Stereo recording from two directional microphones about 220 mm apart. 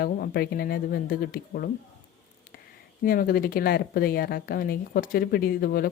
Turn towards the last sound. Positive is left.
turn(degrees=40)  # may be behind; listen again after turning